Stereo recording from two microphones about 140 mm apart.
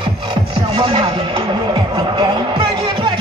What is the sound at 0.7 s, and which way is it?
Music, 35° right (ahead or behind).